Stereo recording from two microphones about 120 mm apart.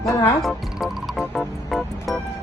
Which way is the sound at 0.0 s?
25° left (ahead or behind).